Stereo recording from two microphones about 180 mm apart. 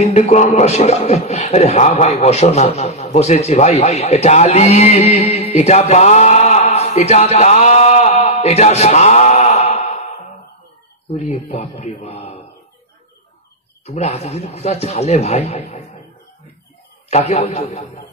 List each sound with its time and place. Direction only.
0.0 s a man's voice: 35° left (ahead or behind)
11.1 s a man's voice: 40° left (ahead or behind)
13.8 s a man's voice: 35° left (ahead or behind)
17.1 s a man's voice: 35° left (ahead or behind)